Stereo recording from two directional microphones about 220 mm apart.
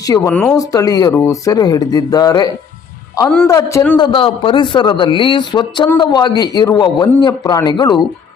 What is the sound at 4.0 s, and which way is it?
Speech, 20° left (ahead or behind).